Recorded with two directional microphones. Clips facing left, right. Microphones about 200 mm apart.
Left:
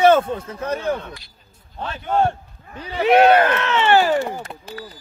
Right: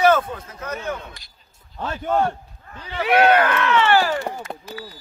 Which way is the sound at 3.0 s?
25° left (ahead or behind).